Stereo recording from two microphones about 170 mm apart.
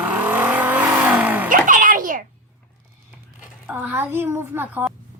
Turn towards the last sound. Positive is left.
turn(degrees=-10)  # may be behind; listen again after turning